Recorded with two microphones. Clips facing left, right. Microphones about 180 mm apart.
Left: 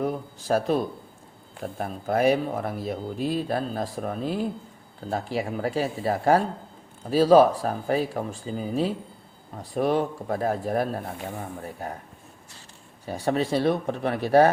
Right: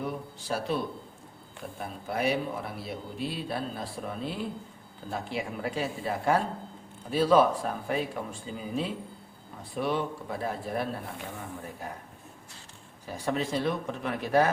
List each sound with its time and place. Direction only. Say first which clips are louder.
0.0 s speech: left 6 dB; 45° left (ahead or behind)
13.2 s speech: left 6 dB; 30° left (ahead or behind)